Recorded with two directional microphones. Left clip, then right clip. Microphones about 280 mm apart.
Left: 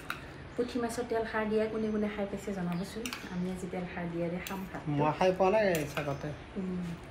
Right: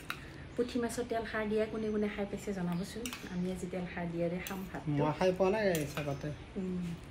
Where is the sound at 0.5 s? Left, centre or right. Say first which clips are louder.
Left 1 dB; centre.